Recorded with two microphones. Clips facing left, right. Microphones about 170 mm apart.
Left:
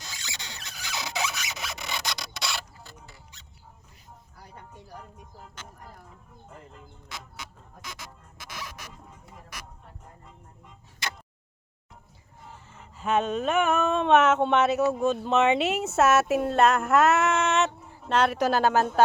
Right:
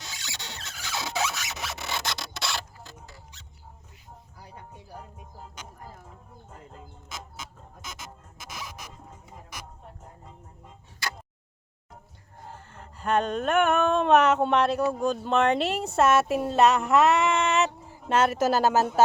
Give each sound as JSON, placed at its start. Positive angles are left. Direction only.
{"t": 0.6, "sound": "squeal", "side_deg": 15}
{"t": 8.5, "sound": "zipper", "side_deg": 0}
{"t": 12.5, "sound": "a sound", "side_deg": 0}